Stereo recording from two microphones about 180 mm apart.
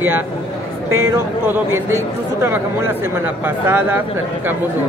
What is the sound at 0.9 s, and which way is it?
A man's voice, 15° right (ahead or behind).